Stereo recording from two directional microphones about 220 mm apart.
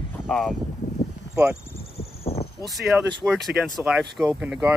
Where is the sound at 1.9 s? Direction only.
25° left (ahead or behind).